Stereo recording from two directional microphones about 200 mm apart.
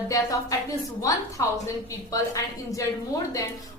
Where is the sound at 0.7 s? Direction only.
15° left (ahead or behind).